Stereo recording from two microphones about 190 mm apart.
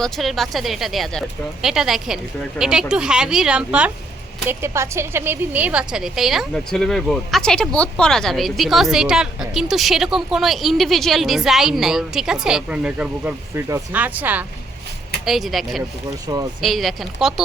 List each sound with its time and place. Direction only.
0.0 s a woman's voice: centre (ahead or behind)
16.2 s speech: 20° right (ahead or behind)
16.6 s a woman's voice: centre (ahead or behind)